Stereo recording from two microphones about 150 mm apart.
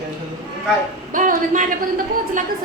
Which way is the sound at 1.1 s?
60° right (ahead or behind).